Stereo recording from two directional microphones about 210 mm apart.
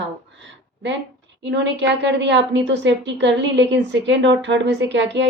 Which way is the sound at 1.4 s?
60° right (ahead or behind).